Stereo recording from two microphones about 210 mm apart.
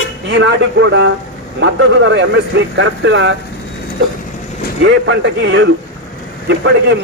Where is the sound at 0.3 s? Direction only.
60° right (ahead or behind).